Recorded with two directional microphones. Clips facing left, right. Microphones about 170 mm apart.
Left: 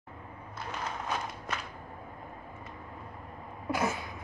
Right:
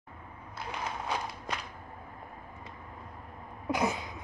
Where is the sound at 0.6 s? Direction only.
10° right (ahead or behind).